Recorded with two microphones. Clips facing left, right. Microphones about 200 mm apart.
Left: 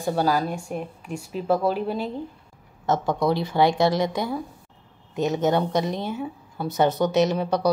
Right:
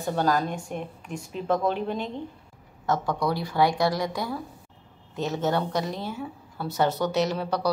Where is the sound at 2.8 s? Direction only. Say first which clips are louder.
Left 4 dB; 25° left (ahead or behind).